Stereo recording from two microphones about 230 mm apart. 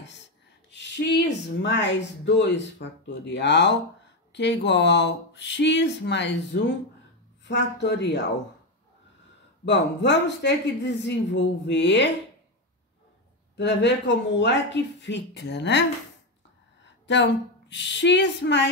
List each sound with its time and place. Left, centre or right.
0.0 s speech: left
9.7 s speech: left
13.6 s speech: left
17.1 s speech: left